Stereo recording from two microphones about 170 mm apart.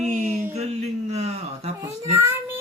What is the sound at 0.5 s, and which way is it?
Speech, 40° right (ahead or behind).